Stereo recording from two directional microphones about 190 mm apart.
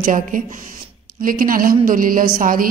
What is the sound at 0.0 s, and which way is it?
A woman's voice, 45° right (ahead or behind).